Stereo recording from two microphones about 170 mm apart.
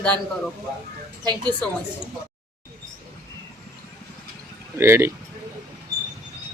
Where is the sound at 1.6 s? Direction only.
10° left (ahead or behind).